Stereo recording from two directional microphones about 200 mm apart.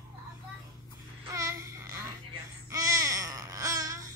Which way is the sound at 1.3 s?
15° right (ahead or behind).